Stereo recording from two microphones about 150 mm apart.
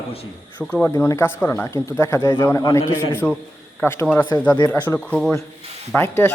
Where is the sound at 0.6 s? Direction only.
5° left (ahead or behind).